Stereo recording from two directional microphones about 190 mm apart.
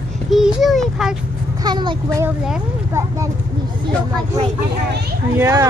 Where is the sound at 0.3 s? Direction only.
Centre (ahead or behind).